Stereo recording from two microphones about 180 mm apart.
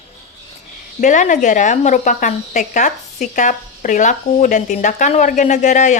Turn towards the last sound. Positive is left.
turn(degrees=40)  # may be behind; listen again after turning